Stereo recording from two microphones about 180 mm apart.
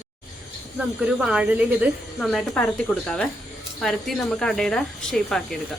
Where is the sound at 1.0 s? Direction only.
5° right (ahead or behind).